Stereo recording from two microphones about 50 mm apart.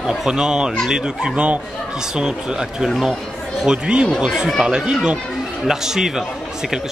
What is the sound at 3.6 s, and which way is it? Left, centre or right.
Speech, centre.